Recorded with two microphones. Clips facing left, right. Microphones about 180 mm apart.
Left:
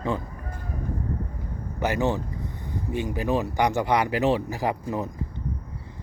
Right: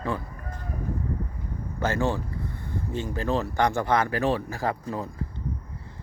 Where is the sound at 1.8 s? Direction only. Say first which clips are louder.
Left 1 dB; 15° left (ahead or behind).